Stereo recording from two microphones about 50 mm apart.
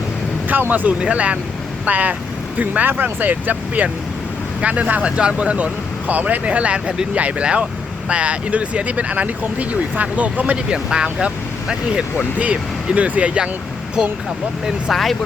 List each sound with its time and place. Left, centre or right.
0.7 s speech: right
10.8 s speech: centre
12.4 s speech: right
14.8 s speech: centre